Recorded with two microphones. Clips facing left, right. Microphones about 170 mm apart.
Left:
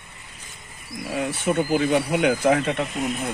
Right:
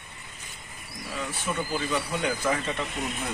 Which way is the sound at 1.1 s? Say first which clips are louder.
Left 8 dB; 60° left (ahead or behind).